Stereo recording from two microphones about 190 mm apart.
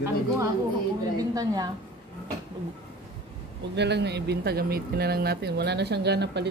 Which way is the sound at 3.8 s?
60° right (ahead or behind).